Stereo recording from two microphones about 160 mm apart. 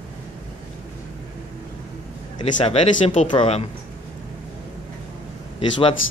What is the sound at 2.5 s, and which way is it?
Speech, 45° left (ahead or behind).